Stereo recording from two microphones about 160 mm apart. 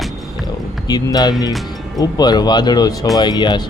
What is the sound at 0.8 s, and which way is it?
Speech, 25° left (ahead or behind).